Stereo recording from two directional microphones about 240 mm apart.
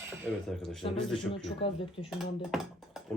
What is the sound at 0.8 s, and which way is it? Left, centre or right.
Speech, left.